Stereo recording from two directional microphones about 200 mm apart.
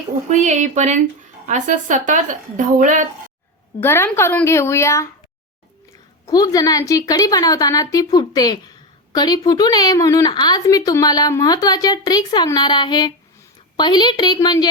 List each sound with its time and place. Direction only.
0.3 s a woman's voice: 35° right (ahead or behind)
3.8 s a woman's voice: 10° left (ahead or behind)
6.2 s a woman's voice: 20° left (ahead or behind)